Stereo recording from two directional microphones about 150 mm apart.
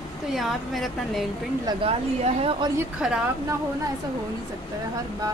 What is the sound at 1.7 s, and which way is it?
Speech, 40° right (ahead or behind).